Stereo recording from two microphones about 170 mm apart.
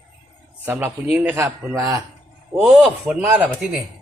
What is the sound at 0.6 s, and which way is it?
A man's voice, 10° right (ahead or behind).